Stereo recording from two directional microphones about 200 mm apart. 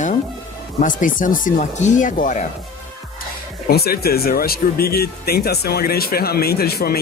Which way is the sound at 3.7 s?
50° left (ahead or behind).